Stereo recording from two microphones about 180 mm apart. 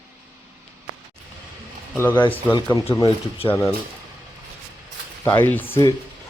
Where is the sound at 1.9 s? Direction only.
10° left (ahead or behind).